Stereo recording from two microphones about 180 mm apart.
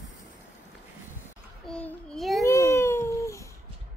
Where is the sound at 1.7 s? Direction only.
5° left (ahead or behind).